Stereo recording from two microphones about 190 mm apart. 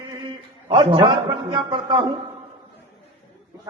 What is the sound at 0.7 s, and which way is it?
A man's voice, 25° right (ahead or behind).